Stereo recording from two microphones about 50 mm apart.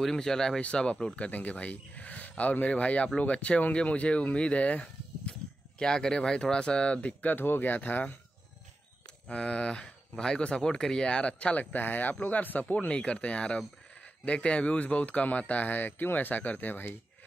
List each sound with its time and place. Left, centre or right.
0.0 s speech: centre
0.6 s speech: left
5.8 s speech: centre
7.3 s speech: left
9.3 s speech: left
11.7 s speech: left
12.6 s speech: left